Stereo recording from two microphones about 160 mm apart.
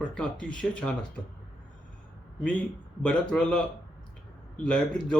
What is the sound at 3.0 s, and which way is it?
A man's voice, 5° left (ahead or behind).